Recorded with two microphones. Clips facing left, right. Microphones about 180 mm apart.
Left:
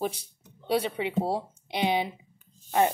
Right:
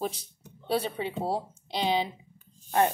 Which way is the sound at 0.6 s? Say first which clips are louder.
Left 2 dB; 15° left (ahead or behind).